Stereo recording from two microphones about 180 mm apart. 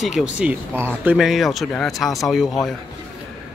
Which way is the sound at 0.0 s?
5° right (ahead or behind).